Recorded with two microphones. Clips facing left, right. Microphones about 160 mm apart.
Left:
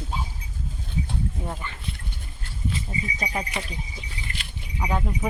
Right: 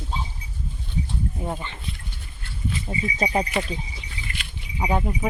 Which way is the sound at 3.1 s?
35° right (ahead or behind).